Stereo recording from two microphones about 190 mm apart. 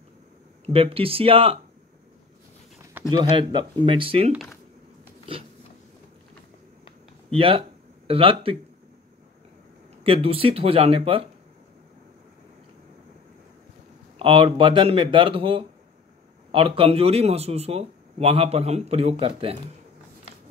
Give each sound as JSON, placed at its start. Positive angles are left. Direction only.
{"t": 0.7, "sound": "speech", "side_deg": -30}
{"t": 3.1, "sound": "speech", "side_deg": -25}
{"t": 4.3, "sound": "speech", "side_deg": 0}
{"t": 7.3, "sound": "speech", "side_deg": -30}
{"t": 10.0, "sound": "speech", "side_deg": -30}
{"t": 14.1, "sound": "a man's voice", "side_deg": -30}